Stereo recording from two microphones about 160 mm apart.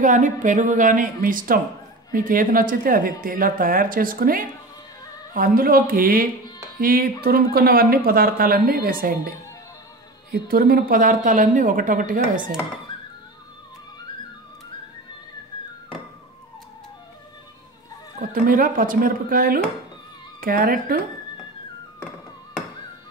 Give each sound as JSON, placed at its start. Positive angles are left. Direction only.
{"t": 0.0, "sound": "speech", "side_deg": -50}
{"t": 10.3, "sound": "speech", "side_deg": -65}
{"t": 18.2, "sound": "speech", "side_deg": -60}